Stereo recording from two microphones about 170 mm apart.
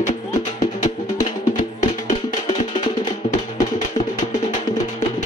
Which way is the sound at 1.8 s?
45° left (ahead or behind).